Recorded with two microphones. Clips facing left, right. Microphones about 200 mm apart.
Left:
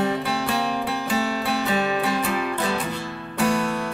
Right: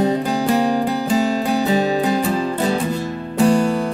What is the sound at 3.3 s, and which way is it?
Music, 30° right (ahead or behind).